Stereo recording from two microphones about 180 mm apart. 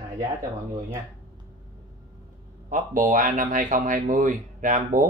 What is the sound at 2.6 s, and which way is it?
Speech, 50° right (ahead or behind).